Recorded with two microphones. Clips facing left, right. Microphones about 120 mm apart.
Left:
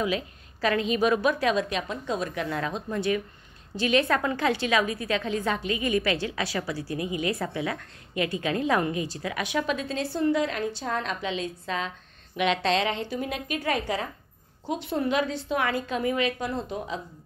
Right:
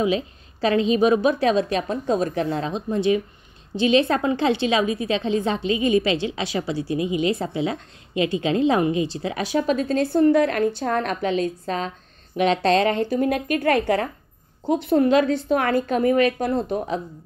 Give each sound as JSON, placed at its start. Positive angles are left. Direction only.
{"t": 0.0, "sound": "a woman's voice", "side_deg": -25}